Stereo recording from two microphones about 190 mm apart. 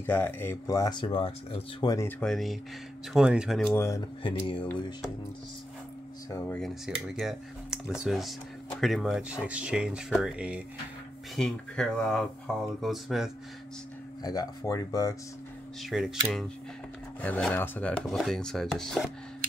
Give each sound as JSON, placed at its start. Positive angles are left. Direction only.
{"t": 0.0, "sound": "speech", "side_deg": 10}
{"t": 3.7, "sound": "speech", "side_deg": 15}
{"t": 4.2, "sound": "speech", "side_deg": 25}
{"t": 7.1, "sound": "speech", "side_deg": 0}
{"t": 14.2, "sound": "speech", "side_deg": 20}
{"t": 15.8, "sound": "speech", "side_deg": 0}